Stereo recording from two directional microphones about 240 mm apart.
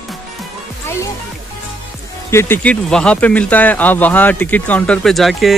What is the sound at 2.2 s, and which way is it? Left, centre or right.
Speech, centre.